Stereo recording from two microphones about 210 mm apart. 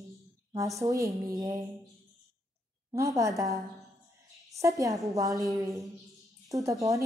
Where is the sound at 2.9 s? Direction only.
15° right (ahead or behind).